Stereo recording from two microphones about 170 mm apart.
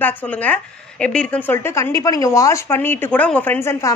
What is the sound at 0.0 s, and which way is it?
Speech, 10° left (ahead or behind).